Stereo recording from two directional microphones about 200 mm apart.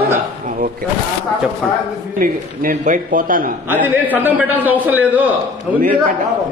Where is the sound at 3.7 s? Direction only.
10° right (ahead or behind).